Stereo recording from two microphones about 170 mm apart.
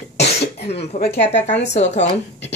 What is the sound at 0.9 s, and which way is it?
Speech, 40° left (ahead or behind).